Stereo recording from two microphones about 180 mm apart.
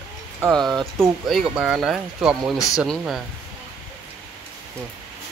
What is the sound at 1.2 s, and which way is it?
Speech, 5° right (ahead or behind).